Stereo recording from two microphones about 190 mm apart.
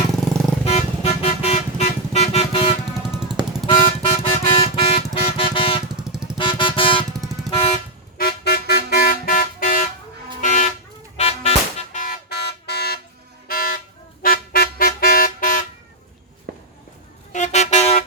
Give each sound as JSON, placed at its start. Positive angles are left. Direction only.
{"t": 0.6, "sound": "vehicle", "side_deg": 30}
{"t": 3.0, "sound": "music", "side_deg": -5}
{"t": 3.7, "sound": "vehicle", "side_deg": 30}
{"t": 4.5, "sound": "a sound", "side_deg": 30}
{"t": 5.2, "sound": "vehicle", "side_deg": 30}
{"t": 5.9, "sound": "vehicle", "side_deg": -5}
{"t": 6.3, "sound": "vehicle", "side_deg": 25}
{"t": 8.2, "sound": "vehicle horn", "side_deg": 55}
{"t": 10.4, "sound": "toot", "side_deg": 40}
{"t": 11.2, "sound": "music", "side_deg": 35}
{"t": 12.0, "sound": "a sound", "side_deg": 55}
{"t": 13.5, "sound": "vehicle", "side_deg": 50}
{"t": 16.5, "sound": "walk", "side_deg": -60}
{"t": 17.3, "sound": "vehicle", "side_deg": 40}